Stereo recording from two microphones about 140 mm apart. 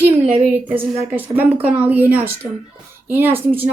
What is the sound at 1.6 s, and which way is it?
A woman's voice, 10° right (ahead or behind).